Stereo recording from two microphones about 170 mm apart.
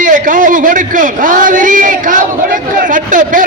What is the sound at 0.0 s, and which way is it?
A man's voice, 50° right (ahead or behind).